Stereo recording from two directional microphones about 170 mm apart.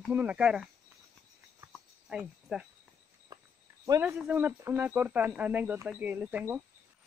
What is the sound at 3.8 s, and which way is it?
Speech, 15° right (ahead or behind).